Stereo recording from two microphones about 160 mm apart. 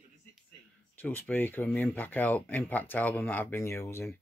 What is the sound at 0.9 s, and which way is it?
Speech, 10° left (ahead or behind).